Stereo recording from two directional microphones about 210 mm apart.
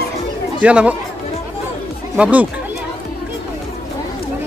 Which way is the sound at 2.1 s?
5° right (ahead or behind).